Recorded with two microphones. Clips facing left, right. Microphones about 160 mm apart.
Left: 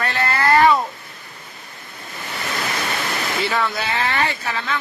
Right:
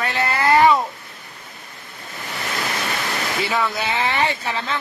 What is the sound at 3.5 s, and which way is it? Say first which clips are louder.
Speech: even; 10° right (ahead or behind).